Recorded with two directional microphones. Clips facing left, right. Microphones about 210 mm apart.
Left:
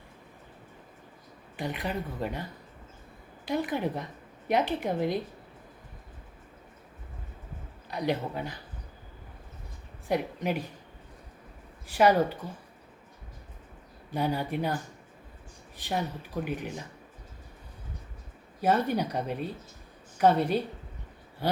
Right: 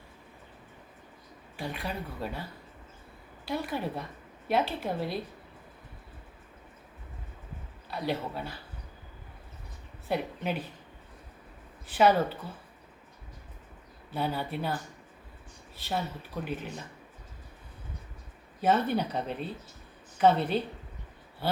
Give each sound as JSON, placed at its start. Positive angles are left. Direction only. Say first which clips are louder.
{"t": 1.5, "sound": "speech", "louder": "left 3 dB", "side_deg": 20}
{"t": 3.4, "sound": "speech", "louder": "left 3 dB", "side_deg": 15}
{"t": 7.9, "sound": "speech", "louder": "left 3 dB", "side_deg": 15}
{"t": 10.1, "sound": "speech", "louder": "left 2 dB", "side_deg": 15}
{"t": 11.9, "sound": "speech", "louder": "left 1 dB", "side_deg": 10}
{"t": 14.1, "sound": "speech", "louder": "left 3 dB", "side_deg": 15}
{"t": 18.6, "sound": "speech", "louder": "even", "side_deg": 10}